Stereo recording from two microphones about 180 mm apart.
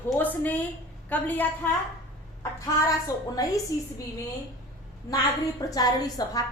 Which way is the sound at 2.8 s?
20° left (ahead or behind).